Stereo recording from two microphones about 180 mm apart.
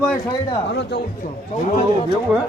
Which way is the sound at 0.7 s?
70° left (ahead or behind).